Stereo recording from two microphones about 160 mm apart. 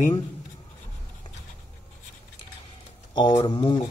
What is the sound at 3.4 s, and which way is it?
Speech, 30° left (ahead or behind).